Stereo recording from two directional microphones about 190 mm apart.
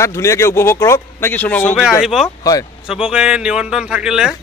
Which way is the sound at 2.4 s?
20° left (ahead or behind).